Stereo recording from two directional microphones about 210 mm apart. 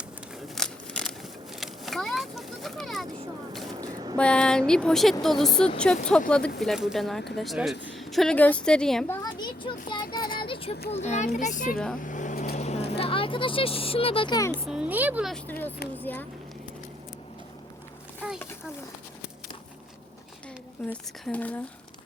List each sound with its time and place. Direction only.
0.4 s a sound: centre (ahead or behind)
1.5 s vehicle: centre (ahead or behind)
3.8 s a sound: 20° right (ahead or behind)
4.2 s speech: 5° left (ahead or behind)
9.2 s a child's voice: 20° left (ahead or behind); by 11.8 s 40° left (ahead or behind)
11.9 s vehicle: 40° left (ahead or behind)
12.9 s speech: 25° left (ahead or behind)
14.6 s speech: 5° right (ahead or behind)
15.4 s speech: 10° left (ahead or behind)
20.9 s speech: 5° left (ahead or behind)